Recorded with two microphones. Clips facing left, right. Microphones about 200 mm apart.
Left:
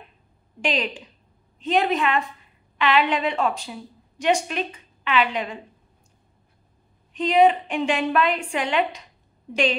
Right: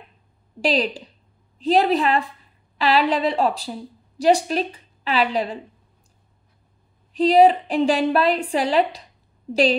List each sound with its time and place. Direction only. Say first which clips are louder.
0.6 s a woman's voice: right 5 dB; 35° right (ahead or behind)
7.2 s a woman's voice: right 3 dB; 35° right (ahead or behind)